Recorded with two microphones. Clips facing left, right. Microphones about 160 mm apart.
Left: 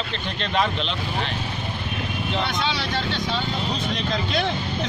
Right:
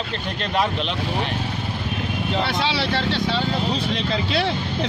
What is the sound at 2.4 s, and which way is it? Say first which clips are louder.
Speech: right 3 dB; 30° right (ahead or behind).